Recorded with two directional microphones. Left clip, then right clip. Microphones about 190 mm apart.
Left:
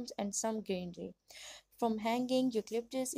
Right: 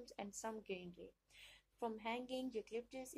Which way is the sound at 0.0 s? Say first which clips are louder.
Left 11 dB; 45° left (ahead or behind).